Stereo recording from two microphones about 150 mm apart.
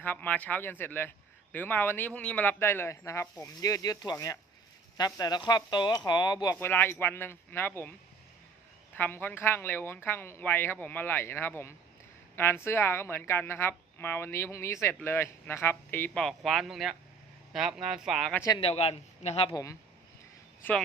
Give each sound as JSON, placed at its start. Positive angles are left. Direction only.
{"t": 0.0, "sound": "a woman's voice", "side_deg": 10}
{"t": 6.6, "sound": "a woman's voice", "side_deg": 15}
{"t": 9.0, "sound": "a woman's voice", "side_deg": 15}
{"t": 18.5, "sound": "a man's voice", "side_deg": 40}
{"t": 20.6, "sound": "a woman's voice", "side_deg": 15}